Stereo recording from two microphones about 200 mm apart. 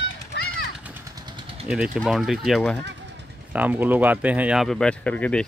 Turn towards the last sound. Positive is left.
turn(degrees=5)  # may be behind; listen again after turning